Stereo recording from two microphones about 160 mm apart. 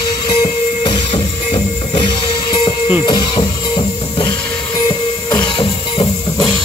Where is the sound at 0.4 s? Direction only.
30° left (ahead or behind).